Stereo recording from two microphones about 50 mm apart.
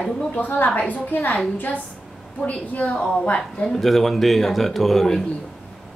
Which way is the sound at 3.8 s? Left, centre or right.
Centre.